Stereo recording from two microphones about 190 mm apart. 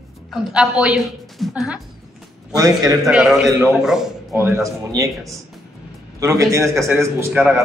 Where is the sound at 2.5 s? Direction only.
20° right (ahead or behind).